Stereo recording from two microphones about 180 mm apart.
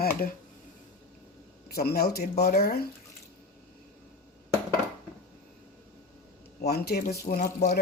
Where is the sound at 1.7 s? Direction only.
60° left (ahead or behind).